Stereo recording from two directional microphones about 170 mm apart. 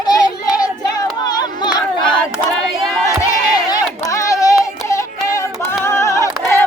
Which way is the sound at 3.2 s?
20° left (ahead or behind).